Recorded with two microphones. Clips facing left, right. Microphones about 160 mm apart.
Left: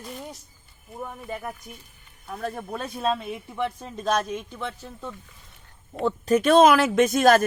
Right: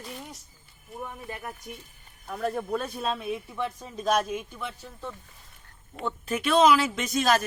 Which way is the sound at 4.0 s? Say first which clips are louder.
Even; 5° right (ahead or behind).